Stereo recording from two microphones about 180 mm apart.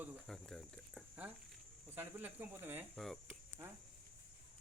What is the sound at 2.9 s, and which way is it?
Speech, centre (ahead or behind).